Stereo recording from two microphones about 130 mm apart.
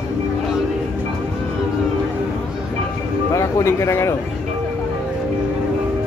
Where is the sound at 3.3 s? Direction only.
20° left (ahead or behind).